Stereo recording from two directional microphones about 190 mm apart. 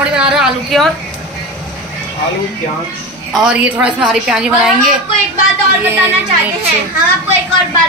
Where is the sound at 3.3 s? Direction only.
5° right (ahead or behind).